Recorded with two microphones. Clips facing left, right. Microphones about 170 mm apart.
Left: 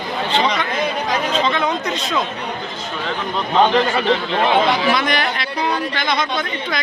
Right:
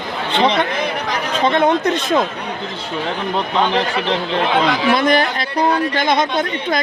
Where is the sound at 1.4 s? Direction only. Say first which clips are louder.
Right 5 dB; 50° right (ahead or behind).